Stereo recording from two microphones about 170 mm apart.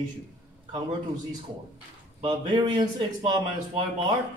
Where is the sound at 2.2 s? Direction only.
30° right (ahead or behind).